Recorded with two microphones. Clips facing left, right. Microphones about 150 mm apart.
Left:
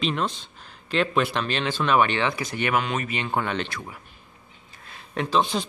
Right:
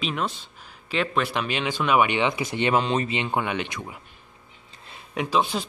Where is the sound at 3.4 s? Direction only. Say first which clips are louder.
Even; 15° right (ahead or behind).